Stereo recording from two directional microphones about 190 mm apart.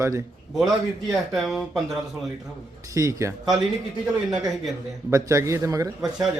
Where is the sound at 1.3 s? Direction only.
Centre (ahead or behind).